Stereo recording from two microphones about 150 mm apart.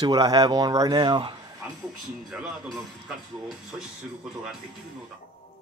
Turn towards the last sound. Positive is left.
turn(degrees=-5)  # may be behind; listen again after turning